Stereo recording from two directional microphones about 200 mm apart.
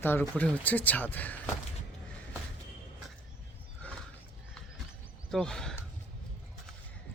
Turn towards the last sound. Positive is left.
turn(degrees=5)  # may be behind; listen again after turning